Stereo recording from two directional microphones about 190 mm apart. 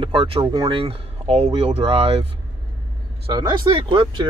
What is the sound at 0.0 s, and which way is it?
Speech, 30° right (ahead or behind).